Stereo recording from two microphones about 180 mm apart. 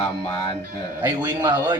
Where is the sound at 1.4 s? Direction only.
25° right (ahead or behind).